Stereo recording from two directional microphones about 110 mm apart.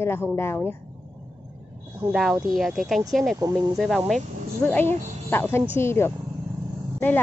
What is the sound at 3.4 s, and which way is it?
Speech, 35° right (ahead or behind).